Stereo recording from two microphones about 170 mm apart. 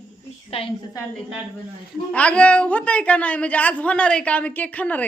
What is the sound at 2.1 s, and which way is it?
A woman's voice, 5° left (ahead or behind).